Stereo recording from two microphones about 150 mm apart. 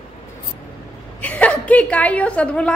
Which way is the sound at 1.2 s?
10° left (ahead or behind).